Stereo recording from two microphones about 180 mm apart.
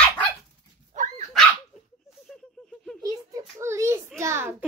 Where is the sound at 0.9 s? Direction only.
45° right (ahead or behind).